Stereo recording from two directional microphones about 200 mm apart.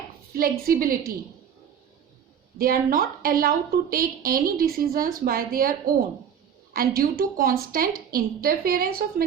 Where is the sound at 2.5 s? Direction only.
45° right (ahead or behind).